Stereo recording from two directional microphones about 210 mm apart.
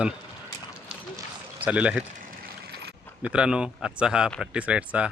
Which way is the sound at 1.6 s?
5° right (ahead or behind).